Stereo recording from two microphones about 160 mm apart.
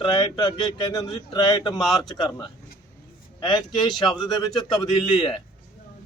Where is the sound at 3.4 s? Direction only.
25° left (ahead or behind).